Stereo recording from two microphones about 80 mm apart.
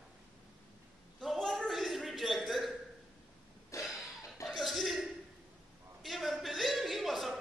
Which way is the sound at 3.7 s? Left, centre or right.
Left.